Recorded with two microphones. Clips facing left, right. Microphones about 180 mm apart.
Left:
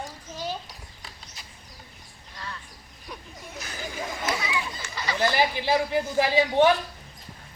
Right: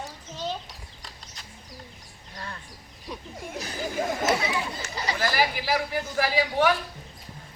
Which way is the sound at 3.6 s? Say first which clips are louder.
Right 5 dB; 45° right (ahead or behind).